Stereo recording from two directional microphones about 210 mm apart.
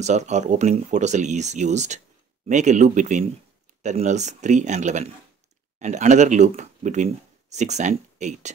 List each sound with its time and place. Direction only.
0.0 s speech: 35° right (ahead or behind)